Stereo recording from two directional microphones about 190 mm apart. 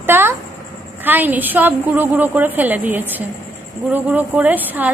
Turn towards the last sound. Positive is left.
turn(degrees=-10)  # may be behind; listen again after turning